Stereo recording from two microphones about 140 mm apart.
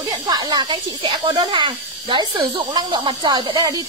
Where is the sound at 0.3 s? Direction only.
30° right (ahead or behind).